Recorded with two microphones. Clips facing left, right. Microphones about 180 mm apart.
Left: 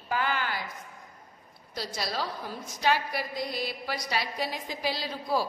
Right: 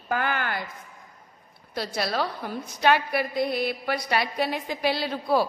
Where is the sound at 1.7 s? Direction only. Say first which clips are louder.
Right 6 dB; 60° right (ahead or behind).